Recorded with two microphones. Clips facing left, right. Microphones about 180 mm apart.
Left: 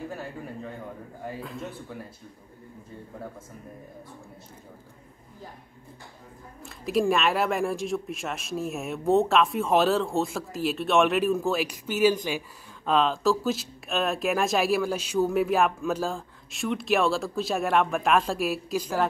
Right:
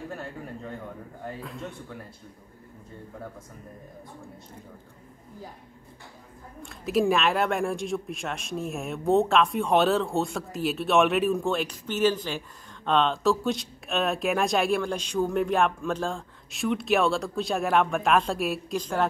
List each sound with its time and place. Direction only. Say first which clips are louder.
0.1 s speech: left 1 dB; 5° left (ahead or behind)
6.6 s speech: right 1 dB; centre (ahead or behind)